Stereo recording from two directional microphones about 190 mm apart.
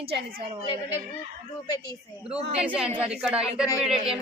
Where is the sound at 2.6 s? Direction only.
5° right (ahead or behind).